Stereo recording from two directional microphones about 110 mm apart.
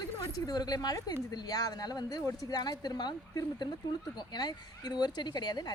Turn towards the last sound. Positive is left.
turn(degrees=40)  # may be behind; listen again after turning